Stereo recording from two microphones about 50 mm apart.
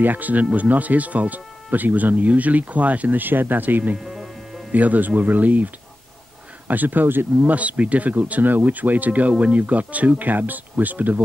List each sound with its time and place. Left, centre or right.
0.0 s speech: right
4.0 s music: centre
4.7 s speech: right
6.7 s speech: right
7.5 s speech: right